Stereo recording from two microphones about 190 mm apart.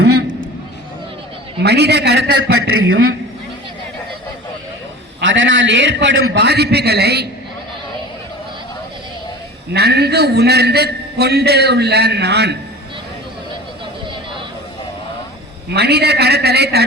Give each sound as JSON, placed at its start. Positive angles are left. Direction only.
{"t": 0.0, "sound": "a sound", "side_deg": -60}
{"t": 1.6, "sound": "a man's voice", "side_deg": -60}
{"t": 5.2, "sound": "a man's voice", "side_deg": -80}
{"t": 9.7, "sound": "a man's voice", "side_deg": -60}
{"t": 15.7, "sound": "a man's voice", "side_deg": -60}